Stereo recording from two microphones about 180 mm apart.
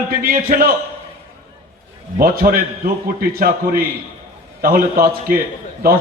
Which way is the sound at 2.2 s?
55° right (ahead or behind).